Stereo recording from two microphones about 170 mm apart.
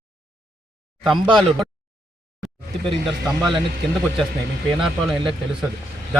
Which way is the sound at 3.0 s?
Centre (ahead or behind).